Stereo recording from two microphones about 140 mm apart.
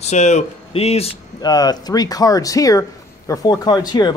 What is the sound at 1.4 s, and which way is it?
Speech, 30° left (ahead or behind).